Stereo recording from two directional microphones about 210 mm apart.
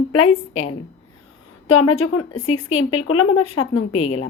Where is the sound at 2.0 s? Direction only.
90° left.